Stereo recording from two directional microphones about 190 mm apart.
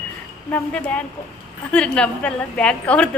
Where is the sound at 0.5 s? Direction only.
5° left (ahead or behind).